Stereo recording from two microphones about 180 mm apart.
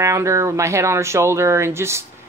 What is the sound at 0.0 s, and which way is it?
Speech, 15° right (ahead or behind).